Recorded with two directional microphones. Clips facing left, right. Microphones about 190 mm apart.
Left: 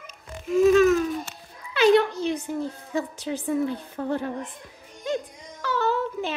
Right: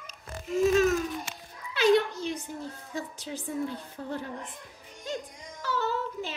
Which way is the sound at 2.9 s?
65° left (ahead or behind).